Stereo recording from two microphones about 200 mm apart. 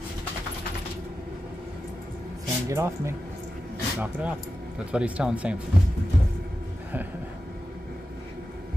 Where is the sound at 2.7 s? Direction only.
15° right (ahead or behind).